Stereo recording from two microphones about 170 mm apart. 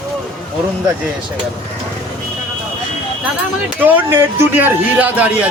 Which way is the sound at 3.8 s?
10° right (ahead or behind).